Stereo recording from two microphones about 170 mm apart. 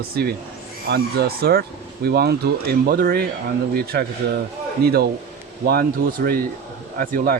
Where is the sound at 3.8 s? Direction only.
70° right (ahead or behind).